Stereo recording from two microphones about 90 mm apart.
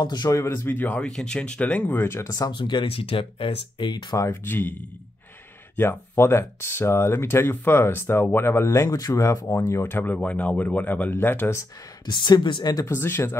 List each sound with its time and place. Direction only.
0.0 s speech: 50° left (ahead or behind)
0.4 s speech: 25° left (ahead or behind)
2.5 s speech: 70° left (ahead or behind)
4.3 s speech: 25° left (ahead or behind)
5.8 s speech: 30° left (ahead or behind)
8.6 s speech: 35° left (ahead or behind)
12.1 s speech: 60° left (ahead or behind)
12.9 s speech: 25° left (ahead or behind)